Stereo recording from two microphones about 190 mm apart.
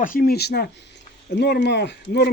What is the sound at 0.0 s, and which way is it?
Speech, 45° left (ahead or behind).